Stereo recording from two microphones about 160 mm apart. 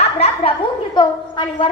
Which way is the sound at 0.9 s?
30° left (ahead or behind).